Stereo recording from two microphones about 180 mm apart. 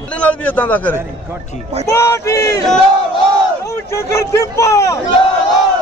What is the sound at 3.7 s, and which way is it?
Speech, 15° left (ahead or behind).